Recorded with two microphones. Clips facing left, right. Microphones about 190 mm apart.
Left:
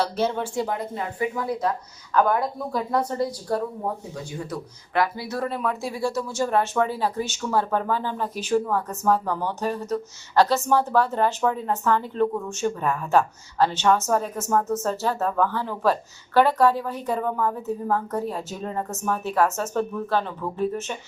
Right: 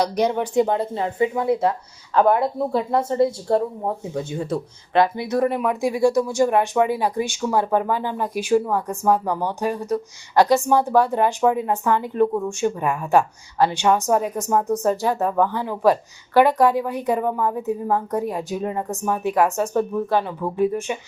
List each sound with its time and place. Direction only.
0.0 s speech: 15° right (ahead or behind)